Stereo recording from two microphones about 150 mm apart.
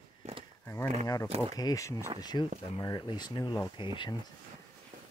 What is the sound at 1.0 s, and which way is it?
Speech, 25° left (ahead or behind).